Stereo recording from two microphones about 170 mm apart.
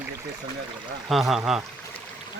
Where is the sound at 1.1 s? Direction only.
Centre (ahead or behind).